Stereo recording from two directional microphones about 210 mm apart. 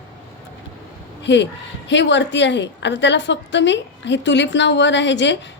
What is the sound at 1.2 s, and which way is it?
A woman's voice, 55° left (ahead or behind).